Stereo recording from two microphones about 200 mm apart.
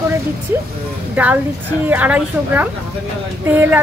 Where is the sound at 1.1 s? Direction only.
10° right (ahead or behind).